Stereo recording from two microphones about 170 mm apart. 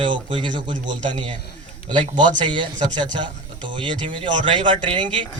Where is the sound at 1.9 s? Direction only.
25° right (ahead or behind).